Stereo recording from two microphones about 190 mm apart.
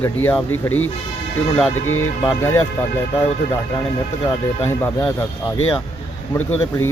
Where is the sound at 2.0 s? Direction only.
20° left (ahead or behind).